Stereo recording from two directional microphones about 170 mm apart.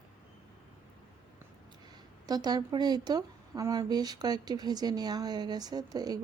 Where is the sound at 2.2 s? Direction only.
25° right (ahead or behind).